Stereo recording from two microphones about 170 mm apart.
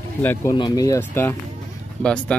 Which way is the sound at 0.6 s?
25° left (ahead or behind).